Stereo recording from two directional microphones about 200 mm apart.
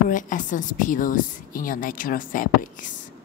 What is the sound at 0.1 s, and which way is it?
A woman's voice, 40° left (ahead or behind).